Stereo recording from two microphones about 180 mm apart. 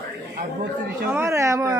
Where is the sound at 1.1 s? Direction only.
15° right (ahead or behind).